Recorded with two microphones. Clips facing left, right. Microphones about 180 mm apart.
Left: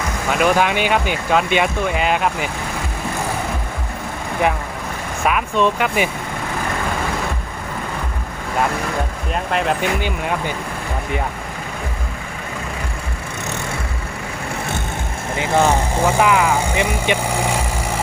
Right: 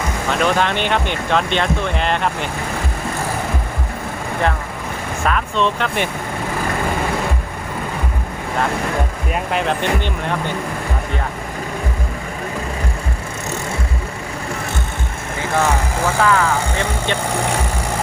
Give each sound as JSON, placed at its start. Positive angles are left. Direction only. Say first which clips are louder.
{"t": 0.3, "sound": "speech", "louder": "left 2 dB", "side_deg": 10}
{"t": 5.2, "sound": "speech", "louder": "left 2 dB", "side_deg": 10}
{"t": 9.3, "sound": "speech", "louder": "even", "side_deg": 0}
{"t": 15.4, "sound": "speech", "louder": "left 2 dB", "side_deg": 20}